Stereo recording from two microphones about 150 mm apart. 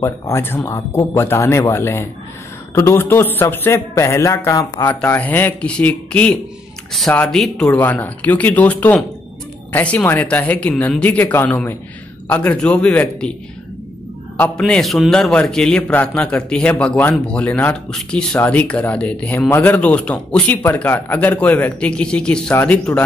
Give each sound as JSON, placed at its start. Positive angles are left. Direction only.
{"t": 0.0, "sound": "speech", "side_deg": 15}
{"t": 14.6, "sound": "a man's voice", "side_deg": 0}